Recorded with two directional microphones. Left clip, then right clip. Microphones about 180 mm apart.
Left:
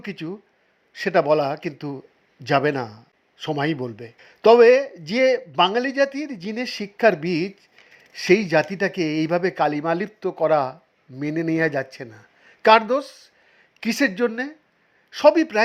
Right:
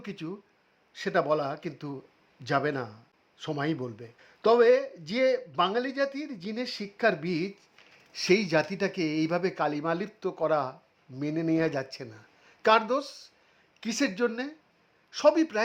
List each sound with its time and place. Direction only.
0.0 s speech: 10° left (ahead or behind)